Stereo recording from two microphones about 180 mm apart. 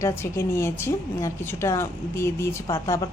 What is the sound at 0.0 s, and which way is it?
A woman's voice, 15° left (ahead or behind).